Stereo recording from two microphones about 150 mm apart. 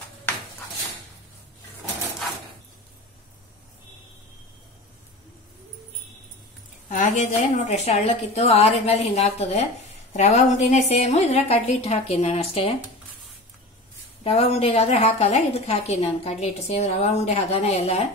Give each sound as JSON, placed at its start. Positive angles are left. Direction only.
{"t": 6.9, "sound": "a woman's voice", "side_deg": 55}
{"t": 14.2, "sound": "a woman's voice", "side_deg": 40}